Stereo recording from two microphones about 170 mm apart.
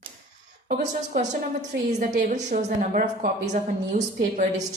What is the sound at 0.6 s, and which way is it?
Speech, 70° right (ahead or behind).